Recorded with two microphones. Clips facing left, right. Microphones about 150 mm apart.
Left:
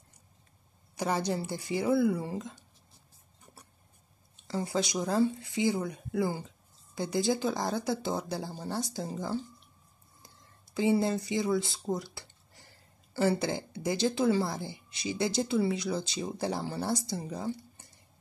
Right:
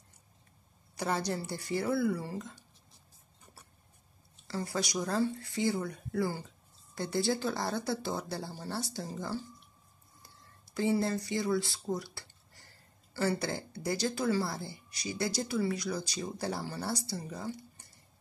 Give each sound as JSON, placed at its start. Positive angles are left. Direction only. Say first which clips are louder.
{"t": 0.9, "sound": "speech", "louder": "left 3 dB", "side_deg": 15}
{"t": 4.4, "sound": "speech", "louder": "left 4 dB", "side_deg": 20}
{"t": 10.8, "sound": "speech", "louder": "left 3 dB", "side_deg": 20}